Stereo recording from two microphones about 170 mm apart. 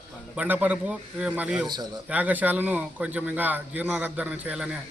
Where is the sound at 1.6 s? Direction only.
25° right (ahead or behind).